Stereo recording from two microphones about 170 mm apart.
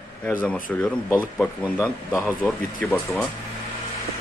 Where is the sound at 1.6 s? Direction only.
10° left (ahead or behind).